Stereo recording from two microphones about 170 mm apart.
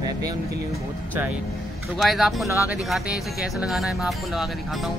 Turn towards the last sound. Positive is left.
turn(degrees=0)  # may be behind; listen again after turning